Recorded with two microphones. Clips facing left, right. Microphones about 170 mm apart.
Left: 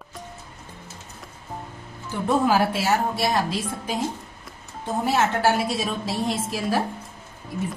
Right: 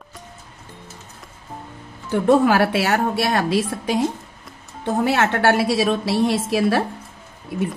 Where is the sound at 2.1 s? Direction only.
70° right (ahead or behind).